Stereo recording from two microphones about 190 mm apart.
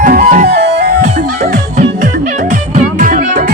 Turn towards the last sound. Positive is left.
turn(degrees=-45)  # may be behind; listen again after turning